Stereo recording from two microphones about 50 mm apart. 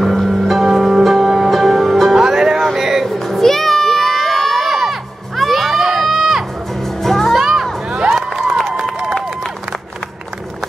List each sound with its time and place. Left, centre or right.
0.0 s music: centre
3.1 s crowd: centre
7.0 s music: centre
7.3 s music: centre
7.9 s run: right
8.8 s run: centre